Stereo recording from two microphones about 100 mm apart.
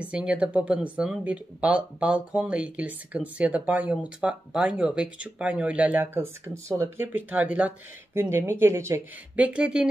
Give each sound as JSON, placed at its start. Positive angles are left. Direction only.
{"t": 0.0, "sound": "speech", "side_deg": -10}
{"t": 9.4, "sound": "speech", "side_deg": -10}